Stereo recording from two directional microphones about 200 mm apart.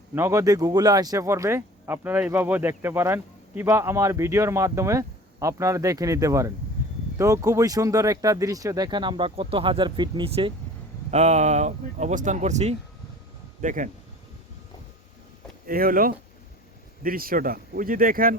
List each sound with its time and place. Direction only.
0.1 s speech: 15° right (ahead or behind); by 13.9 s 40° right (ahead or behind)
15.6 s speech: 45° right (ahead or behind)